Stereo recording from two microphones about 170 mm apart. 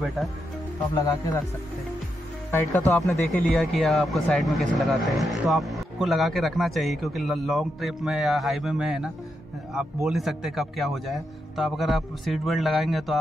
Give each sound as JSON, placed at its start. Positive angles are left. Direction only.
{"t": 0.9, "sound": "speech", "side_deg": 20}
{"t": 2.5, "sound": "speech", "side_deg": 10}